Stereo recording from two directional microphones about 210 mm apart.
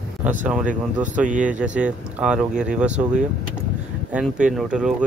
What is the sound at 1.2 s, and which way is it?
Speech, 35° right (ahead or behind).